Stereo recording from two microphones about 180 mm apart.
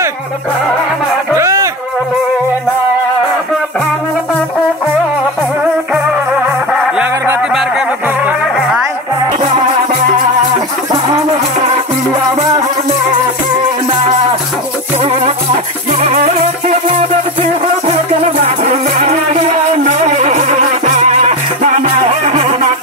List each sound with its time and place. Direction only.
1.3 s music: 15° right (ahead or behind)
6.4 s music: 10° right (ahead or behind)
15.0 s music: 35° right (ahead or behind)
18.4 s music: 40° right (ahead or behind)